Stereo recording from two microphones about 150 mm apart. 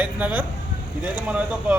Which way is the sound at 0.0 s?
10° right (ahead or behind).